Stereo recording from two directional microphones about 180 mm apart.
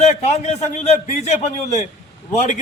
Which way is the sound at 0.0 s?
35° left (ahead or behind).